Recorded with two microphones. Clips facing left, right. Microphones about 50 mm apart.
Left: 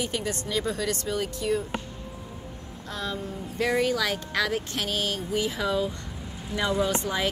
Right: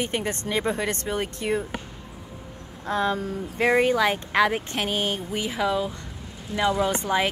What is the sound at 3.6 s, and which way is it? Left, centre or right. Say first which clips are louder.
Speech: right 4 dB; right.